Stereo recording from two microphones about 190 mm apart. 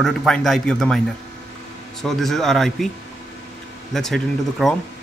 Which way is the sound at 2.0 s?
Centre (ahead or behind).